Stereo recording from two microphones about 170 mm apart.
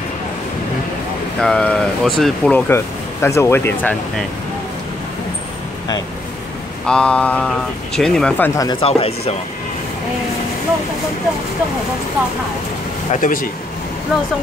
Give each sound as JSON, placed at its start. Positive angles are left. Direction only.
{"t": 1.4, "sound": "speech", "side_deg": 5}
{"t": 2.7, "sound": "speech", "side_deg": 15}
{"t": 6.9, "sound": "speech", "side_deg": 5}
{"t": 8.5, "sound": "speech", "side_deg": 25}
{"t": 8.8, "sound": "speech", "side_deg": 35}
{"t": 13.1, "sound": "speech", "side_deg": 50}